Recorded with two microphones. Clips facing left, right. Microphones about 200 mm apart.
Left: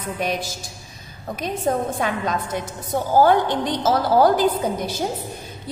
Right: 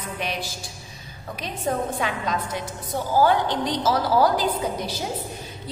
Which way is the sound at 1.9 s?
50° left (ahead or behind).